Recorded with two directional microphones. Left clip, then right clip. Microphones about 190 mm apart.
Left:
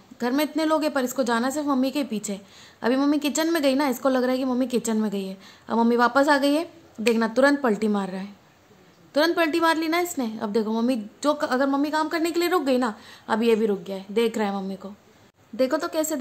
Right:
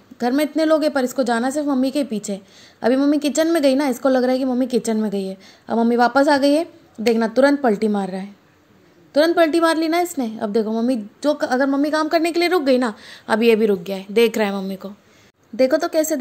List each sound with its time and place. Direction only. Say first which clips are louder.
0.2 s a woman's voice: right 5 dB; 15° right (ahead or behind)